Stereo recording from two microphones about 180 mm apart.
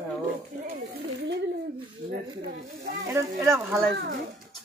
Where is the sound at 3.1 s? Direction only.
15° right (ahead or behind).